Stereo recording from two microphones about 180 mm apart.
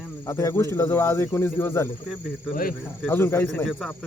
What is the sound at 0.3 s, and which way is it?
A man's voice, 15° left (ahead or behind).